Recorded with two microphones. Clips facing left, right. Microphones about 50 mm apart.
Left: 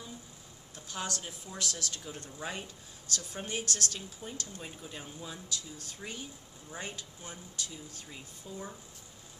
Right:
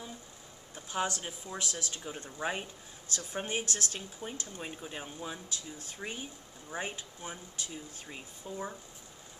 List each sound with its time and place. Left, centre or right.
0.7 s speech: right